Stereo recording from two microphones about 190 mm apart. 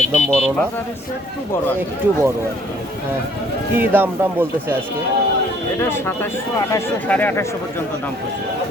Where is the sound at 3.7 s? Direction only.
10° right (ahead or behind).